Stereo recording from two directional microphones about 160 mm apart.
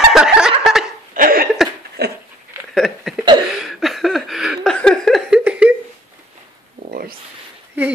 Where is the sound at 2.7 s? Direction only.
Centre (ahead or behind).